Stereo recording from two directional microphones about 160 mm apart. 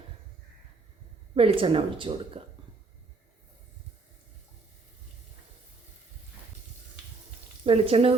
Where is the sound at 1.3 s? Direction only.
35° right (ahead or behind).